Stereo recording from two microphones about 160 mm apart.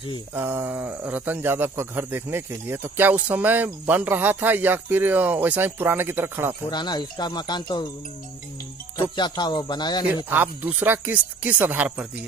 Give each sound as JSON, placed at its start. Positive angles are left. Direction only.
{"t": 0.3, "sound": "speech", "side_deg": -15}
{"t": 6.7, "sound": "speech", "side_deg": 25}
{"t": 9.1, "sound": "speech", "side_deg": 25}
{"t": 10.1, "sound": "speech", "side_deg": -10}